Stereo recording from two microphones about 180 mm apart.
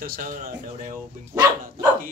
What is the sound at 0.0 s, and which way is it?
Speech, 55° right (ahead or behind).